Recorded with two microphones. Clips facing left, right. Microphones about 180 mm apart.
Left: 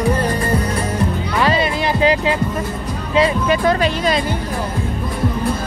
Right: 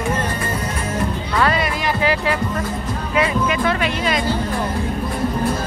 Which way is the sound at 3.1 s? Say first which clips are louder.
Left 4 dB; 30° left (ahead or behind).